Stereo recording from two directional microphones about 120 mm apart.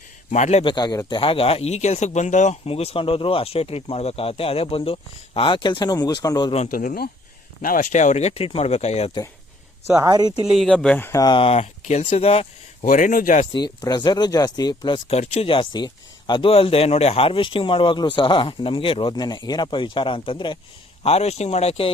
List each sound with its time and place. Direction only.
0.3 s a man's voice: 80° left
0.6 s speech: 35° left (ahead or behind); by 2.6 s 80° left
2.6 s speech: 55° left (ahead or behind); by 6.5 s 35° left (ahead or behind)
6.5 s speech: 65° left (ahead or behind)
7.8 s speech: 90° left; by 9.1 s 65° left (ahead or behind)
9.8 s speech: 30° right (ahead or behind)
10.4 s speech: centre (ahead or behind)
11.0 s speech: 25° left (ahead or behind)
11.3 s speech: 45° left (ahead or behind)
11.5 s speech: 70° left (ahead or behind); by 13.5 s 90° left
13.5 s speech: 35° left (ahead or behind)
15.1 s speech: 60° left (ahead or behind)
19.1 s speech: 35° left (ahead or behind)
21.0 s speech: 60° left (ahead or behind)